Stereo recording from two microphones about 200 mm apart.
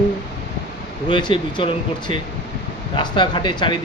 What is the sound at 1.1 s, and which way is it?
Speech, 25° left (ahead or behind).